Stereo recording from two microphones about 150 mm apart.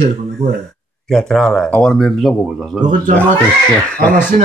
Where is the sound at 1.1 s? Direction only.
5° left (ahead or behind).